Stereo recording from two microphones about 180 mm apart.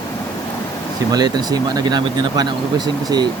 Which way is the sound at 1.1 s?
20° right (ahead or behind).